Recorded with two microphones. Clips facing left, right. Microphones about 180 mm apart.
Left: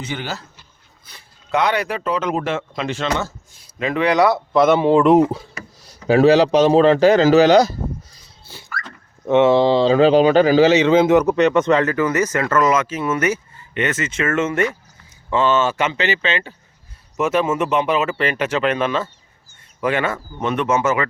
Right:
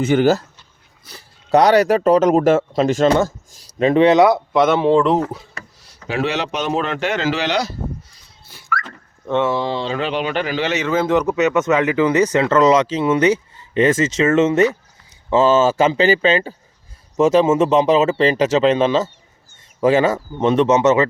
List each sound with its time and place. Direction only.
0.0 s speech: 45° right (ahead or behind); by 4.4 s 25° right (ahead or behind)
4.6 s speech: 5° left (ahead or behind)
6.1 s a man's voice: 40° left (ahead or behind)
8.4 s a sound: 30° left (ahead or behind)
9.2 s a man's voice: 20° left (ahead or behind)
11.3 s speech: 5° right (ahead or behind)
13.7 s speech: 30° right (ahead or behind)